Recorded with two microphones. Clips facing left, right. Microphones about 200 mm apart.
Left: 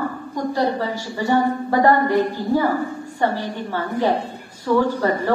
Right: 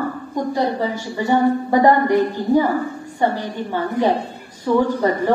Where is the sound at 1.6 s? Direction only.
15° right (ahead or behind).